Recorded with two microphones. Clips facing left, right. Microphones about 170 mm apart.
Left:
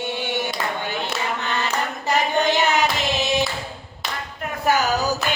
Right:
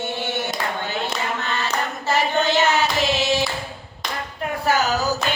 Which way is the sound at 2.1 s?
15° left (ahead or behind).